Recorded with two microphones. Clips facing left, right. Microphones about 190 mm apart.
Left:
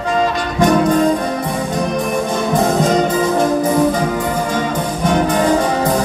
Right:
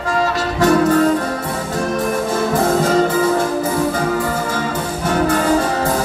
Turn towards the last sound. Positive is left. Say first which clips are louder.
# left 2 dB
turn(degrees=15)  # may be behind; listen again after turning